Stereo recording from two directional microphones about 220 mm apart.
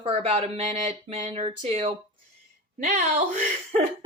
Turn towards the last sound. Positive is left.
turn(degrees=-35)  # may be behind; listen again after turning